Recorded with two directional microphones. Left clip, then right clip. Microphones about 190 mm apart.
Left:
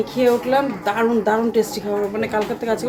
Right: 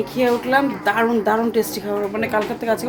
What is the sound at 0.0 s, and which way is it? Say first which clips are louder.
A woman's voice: left 2 dB; 10° right (ahead or behind).